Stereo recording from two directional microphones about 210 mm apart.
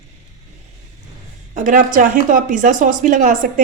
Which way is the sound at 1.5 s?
40° right (ahead or behind).